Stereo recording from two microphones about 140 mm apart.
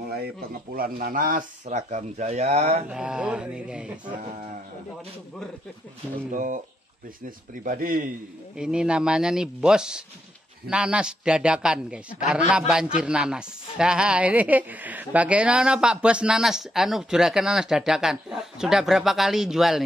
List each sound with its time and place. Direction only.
0.7 s speech: 90° right; by 2.8 s 50° right (ahead or behind)
2.9 s a man's voice: 5° right (ahead or behind)
6.3 s a man's voice: 70° right (ahead or behind)
8.5 s a man's voice: 5° right (ahead or behind)